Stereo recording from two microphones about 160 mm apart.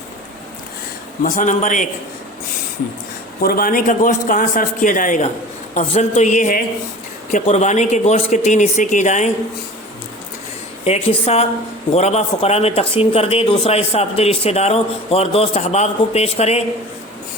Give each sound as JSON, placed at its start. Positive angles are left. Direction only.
{"t": 1.2, "sound": "a man's voice", "side_deg": 50}
{"t": 3.4, "sound": "a man's voice", "side_deg": 65}
{"t": 7.4, "sound": "a man's voice", "side_deg": 45}
{"t": 10.8, "sound": "a man's voice", "side_deg": 40}